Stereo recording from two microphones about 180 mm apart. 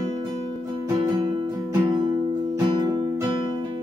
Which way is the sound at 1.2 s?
25° right (ahead or behind).